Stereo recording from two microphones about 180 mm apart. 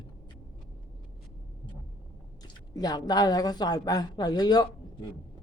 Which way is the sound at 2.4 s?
20° left (ahead or behind).